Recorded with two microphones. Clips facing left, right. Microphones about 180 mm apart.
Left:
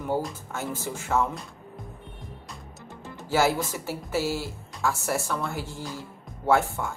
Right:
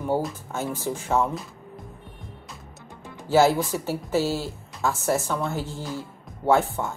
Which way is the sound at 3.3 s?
15° right (ahead or behind).